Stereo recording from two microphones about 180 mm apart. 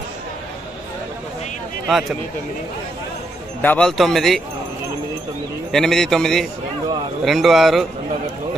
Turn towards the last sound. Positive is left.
turn(degrees=0)  # may be behind; listen again after turning